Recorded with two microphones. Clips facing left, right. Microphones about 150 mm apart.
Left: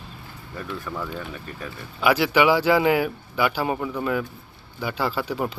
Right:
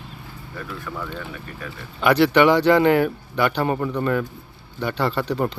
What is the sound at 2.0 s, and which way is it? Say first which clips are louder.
Speech: right 3 dB; 5° left (ahead or behind).